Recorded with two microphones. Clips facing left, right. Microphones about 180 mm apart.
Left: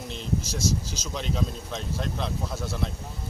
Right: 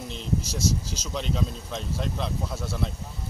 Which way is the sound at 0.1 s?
Centre (ahead or behind).